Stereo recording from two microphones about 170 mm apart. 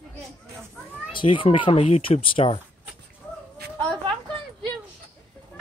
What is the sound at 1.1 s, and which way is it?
Speech, 30° left (ahead or behind).